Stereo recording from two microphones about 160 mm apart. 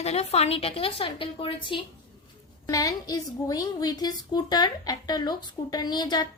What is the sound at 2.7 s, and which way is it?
A woman's voice, 20° left (ahead or behind).